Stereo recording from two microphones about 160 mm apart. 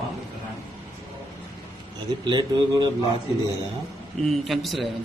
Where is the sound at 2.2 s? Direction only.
25° right (ahead or behind).